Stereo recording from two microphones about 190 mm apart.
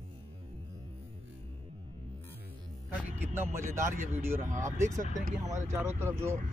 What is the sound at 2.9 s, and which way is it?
Music, 10° right (ahead or behind).